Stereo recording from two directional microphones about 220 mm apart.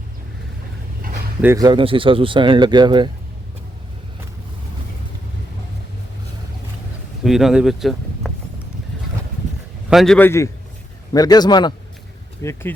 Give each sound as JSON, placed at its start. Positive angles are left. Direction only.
{"t": 1.4, "sound": "speech", "side_deg": -15}
{"t": 7.3, "sound": "speech", "side_deg": 0}
{"t": 9.9, "sound": "a man's voice", "side_deg": 0}